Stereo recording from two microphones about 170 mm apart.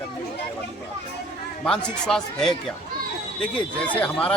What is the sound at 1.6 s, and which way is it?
A man's voice, 5° left (ahead or behind).